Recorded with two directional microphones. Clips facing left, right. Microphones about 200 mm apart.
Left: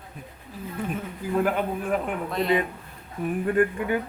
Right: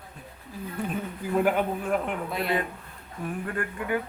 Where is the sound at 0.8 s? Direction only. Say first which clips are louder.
Left 1 dB; centre (ahead or behind).